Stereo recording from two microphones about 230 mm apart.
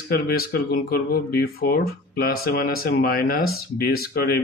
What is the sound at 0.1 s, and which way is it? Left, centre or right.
Speech, left.